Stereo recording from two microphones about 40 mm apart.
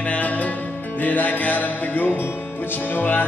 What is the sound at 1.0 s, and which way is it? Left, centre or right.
Music, left.